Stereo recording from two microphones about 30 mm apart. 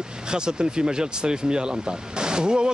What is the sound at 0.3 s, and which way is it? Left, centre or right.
Speech, right.